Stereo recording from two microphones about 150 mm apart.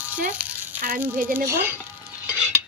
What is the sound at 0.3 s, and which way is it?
Frying, 10° right (ahead or behind).